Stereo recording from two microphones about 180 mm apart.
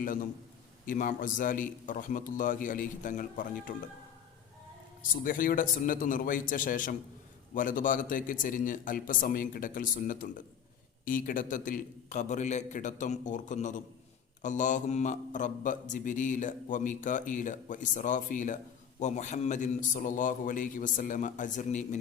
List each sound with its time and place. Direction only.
0.0 s speech: 50° left (ahead or behind)
5.2 s speech: 50° left (ahead or behind)